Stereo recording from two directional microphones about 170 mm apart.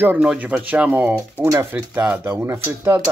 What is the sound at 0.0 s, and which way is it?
Speech, 10° right (ahead or behind).